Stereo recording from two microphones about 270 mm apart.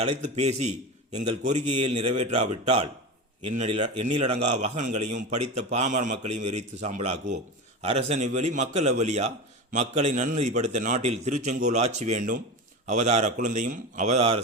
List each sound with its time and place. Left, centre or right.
0.0 s a man's voice: right